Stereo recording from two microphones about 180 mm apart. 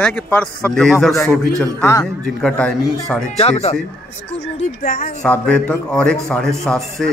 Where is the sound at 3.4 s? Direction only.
35° left (ahead or behind).